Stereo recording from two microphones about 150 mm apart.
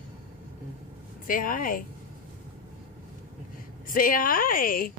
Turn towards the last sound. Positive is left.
turn(degrees=70)  # may be behind; listen again after turning